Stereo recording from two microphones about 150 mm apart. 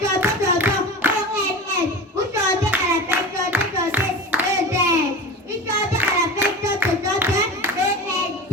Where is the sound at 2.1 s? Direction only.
15° right (ahead or behind).